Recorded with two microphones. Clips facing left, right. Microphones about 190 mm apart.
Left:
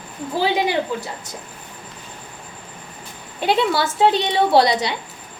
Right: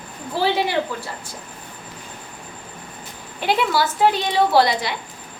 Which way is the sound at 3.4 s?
25° left (ahead or behind).